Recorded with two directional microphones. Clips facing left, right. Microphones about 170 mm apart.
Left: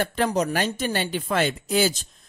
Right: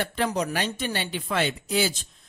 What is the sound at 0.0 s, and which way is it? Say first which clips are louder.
Speech: left 3 dB; 45° left (ahead or behind).